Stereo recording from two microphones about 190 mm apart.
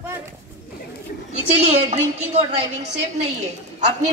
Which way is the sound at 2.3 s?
35° right (ahead or behind).